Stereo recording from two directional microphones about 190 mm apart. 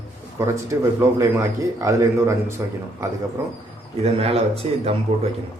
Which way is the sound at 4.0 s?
30° right (ahead or behind).